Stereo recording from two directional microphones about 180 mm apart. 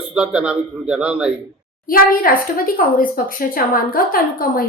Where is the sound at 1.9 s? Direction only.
50° left (ahead or behind).